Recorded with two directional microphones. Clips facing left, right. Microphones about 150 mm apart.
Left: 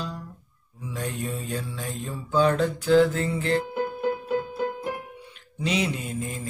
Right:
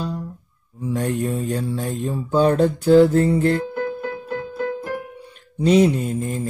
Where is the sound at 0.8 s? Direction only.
55° right (ahead or behind).